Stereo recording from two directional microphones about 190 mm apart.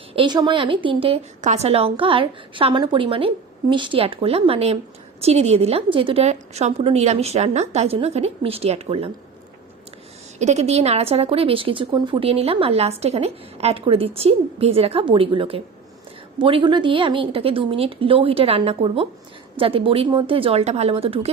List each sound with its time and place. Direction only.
0.1 s a woman's voice: 25° right (ahead or behind)
10.3 s a woman's voice: 35° right (ahead or behind)